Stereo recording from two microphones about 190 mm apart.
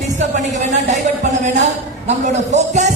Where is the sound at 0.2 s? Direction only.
40° right (ahead or behind).